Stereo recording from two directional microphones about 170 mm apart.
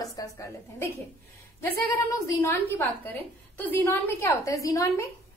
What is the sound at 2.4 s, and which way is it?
A woman's voice, 15° left (ahead or behind).